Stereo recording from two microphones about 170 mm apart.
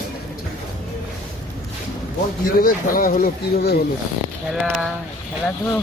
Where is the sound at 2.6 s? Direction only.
55° left (ahead or behind).